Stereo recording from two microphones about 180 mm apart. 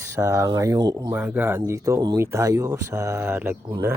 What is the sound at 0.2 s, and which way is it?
Speech, 15° right (ahead or behind).